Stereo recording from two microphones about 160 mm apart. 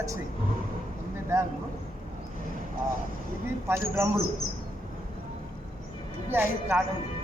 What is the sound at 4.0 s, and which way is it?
Speech, 15° right (ahead or behind).